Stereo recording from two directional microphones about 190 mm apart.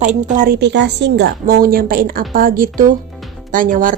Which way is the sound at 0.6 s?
65° right (ahead or behind).